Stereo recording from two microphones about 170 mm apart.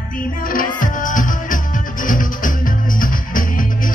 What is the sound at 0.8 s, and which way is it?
Music, 50° left (ahead or behind).